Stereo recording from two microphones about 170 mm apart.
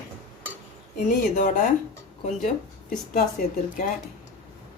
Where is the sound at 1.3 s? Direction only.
50° left (ahead or behind).